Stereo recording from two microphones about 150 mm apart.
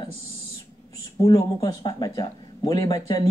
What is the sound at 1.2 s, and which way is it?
Speech, 25° left (ahead or behind).